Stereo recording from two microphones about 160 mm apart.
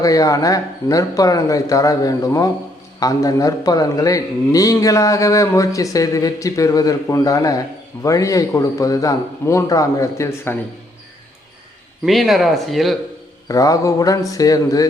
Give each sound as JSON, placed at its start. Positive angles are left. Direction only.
{"t": 0.0, "sound": "a man's voice", "side_deg": 20}
{"t": 12.0, "sound": "speech", "side_deg": 0}
{"t": 13.5, "sound": "a man's voice", "side_deg": 20}